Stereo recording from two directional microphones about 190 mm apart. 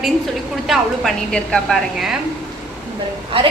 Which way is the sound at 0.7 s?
Centre (ahead or behind).